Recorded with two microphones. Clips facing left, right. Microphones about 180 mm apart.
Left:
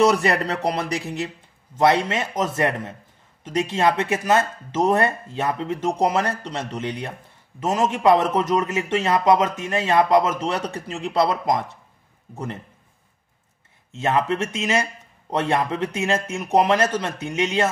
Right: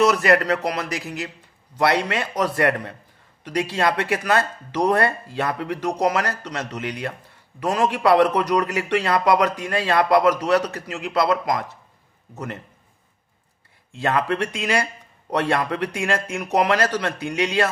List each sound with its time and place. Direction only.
0.0 s a man's voice: 30° left (ahead or behind)
13.9 s a man's voice: 20° left (ahead or behind)